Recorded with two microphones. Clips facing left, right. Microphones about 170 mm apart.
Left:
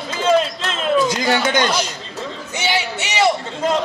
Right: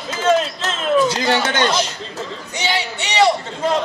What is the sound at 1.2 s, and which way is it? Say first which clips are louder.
Speech: even; 10° left (ahead or behind).